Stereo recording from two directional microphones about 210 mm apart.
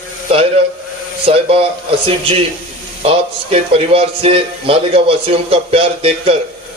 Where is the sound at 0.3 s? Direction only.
25° right (ahead or behind).